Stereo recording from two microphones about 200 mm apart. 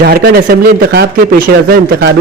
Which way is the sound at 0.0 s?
50° right (ahead or behind).